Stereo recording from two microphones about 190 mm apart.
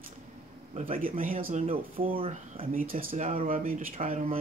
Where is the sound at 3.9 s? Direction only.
30° right (ahead or behind).